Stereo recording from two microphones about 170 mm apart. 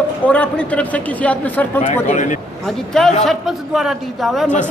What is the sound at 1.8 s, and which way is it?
Speech, 45° left (ahead or behind).